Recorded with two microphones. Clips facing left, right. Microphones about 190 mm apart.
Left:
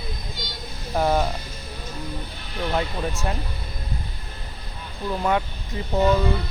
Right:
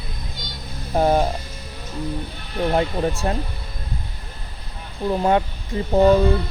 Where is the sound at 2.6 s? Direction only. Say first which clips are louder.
Right 5 dB; 35° right (ahead or behind).